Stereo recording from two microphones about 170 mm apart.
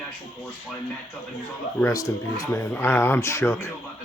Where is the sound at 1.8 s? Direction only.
20° left (ahead or behind).